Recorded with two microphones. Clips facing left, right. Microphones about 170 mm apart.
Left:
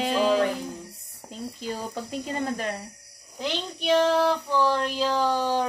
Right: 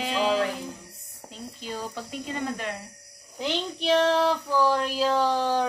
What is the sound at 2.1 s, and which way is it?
Speech, 40° left (ahead or behind).